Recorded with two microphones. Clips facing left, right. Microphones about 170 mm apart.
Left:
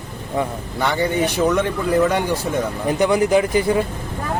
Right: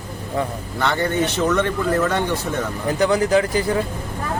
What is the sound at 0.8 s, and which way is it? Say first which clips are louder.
A man's voice: left 1 dB; 10° left (ahead or behind).